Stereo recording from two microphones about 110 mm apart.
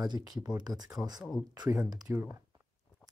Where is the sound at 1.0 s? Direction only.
10° left (ahead or behind).